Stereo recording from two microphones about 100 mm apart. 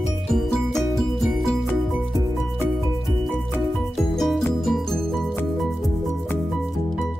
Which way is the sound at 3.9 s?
Centre (ahead or behind).